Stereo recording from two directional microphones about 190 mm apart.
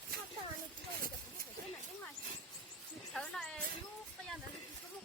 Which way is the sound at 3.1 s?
5° left (ahead or behind).